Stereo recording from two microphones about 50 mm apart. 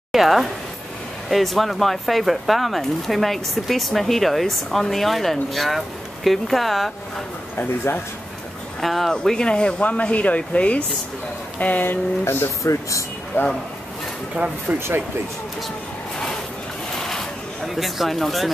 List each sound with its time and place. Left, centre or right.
0.1 s speech: centre
7.5 s speech: left
8.8 s speech: centre; by 12.0 s left
12.6 s speech: left
14.7 s speech: right
16.9 s vehicle: centre
17.6 s speech: centre